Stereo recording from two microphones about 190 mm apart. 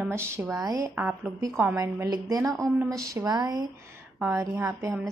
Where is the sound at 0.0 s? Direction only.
15° right (ahead or behind).